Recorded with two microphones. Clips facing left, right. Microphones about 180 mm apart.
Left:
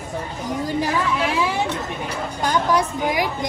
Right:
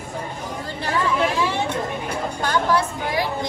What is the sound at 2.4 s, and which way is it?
A woman's voice, 15° left (ahead or behind).